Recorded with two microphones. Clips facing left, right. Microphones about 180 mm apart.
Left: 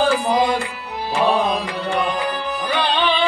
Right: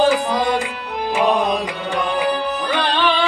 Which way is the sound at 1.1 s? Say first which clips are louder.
Even; 15° right (ahead or behind).